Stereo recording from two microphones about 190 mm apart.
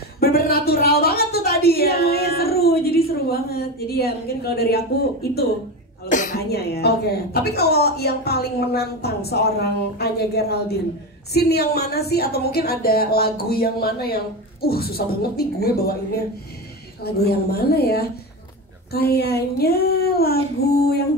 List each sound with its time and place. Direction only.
0.2 s a sound: 55° left (ahead or behind)
1.0 s a woman's voice: 55° left (ahead or behind)
6.0 s a woman's voice: 45° left (ahead or behind)
17.0 s a woman's voice: 55° left (ahead or behind)